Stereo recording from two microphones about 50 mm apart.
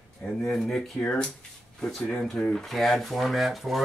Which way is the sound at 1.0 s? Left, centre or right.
Centre.